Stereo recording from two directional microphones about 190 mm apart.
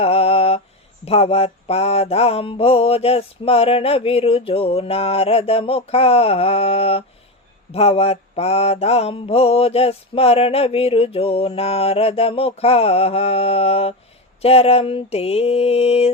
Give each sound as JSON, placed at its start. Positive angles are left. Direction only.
{"t": 0.0, "sound": "mantra", "side_deg": 30}